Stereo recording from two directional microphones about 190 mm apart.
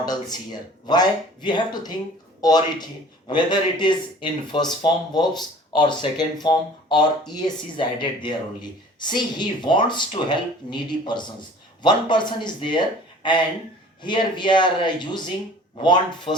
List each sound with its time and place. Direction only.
0.0 s a man's voice: 20° left (ahead or behind)
14.0 s a man's voice: 25° left (ahead or behind)